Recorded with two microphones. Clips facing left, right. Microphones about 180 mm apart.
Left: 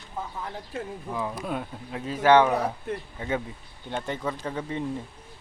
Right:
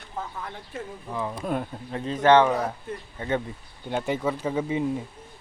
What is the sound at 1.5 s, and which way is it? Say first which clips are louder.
Speech: right 3 dB; centre (ahead or behind).